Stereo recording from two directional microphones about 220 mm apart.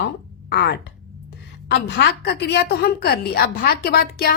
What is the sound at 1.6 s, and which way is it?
A woman's voice, 45° left (ahead or behind).